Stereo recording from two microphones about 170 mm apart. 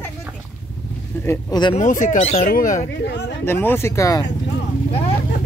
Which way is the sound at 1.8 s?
50° left (ahead or behind).